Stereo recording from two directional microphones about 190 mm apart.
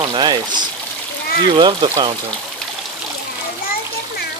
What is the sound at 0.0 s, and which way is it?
Pour, 20° right (ahead or behind).